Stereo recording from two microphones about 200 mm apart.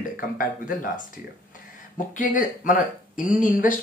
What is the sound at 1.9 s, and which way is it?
Speech, 40° left (ahead or behind).